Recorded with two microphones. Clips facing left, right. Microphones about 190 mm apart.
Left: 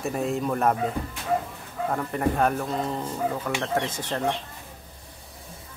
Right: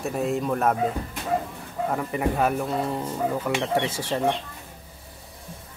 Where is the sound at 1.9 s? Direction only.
5° right (ahead or behind).